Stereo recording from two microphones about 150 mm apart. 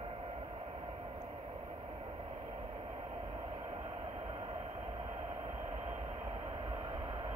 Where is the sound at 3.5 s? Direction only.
35° right (ahead or behind).